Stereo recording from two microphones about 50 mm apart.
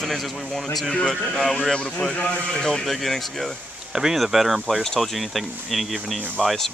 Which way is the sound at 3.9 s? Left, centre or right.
Centre.